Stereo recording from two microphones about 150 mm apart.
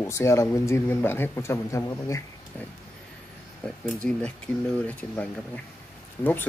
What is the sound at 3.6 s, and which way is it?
Speech, 5° left (ahead or behind).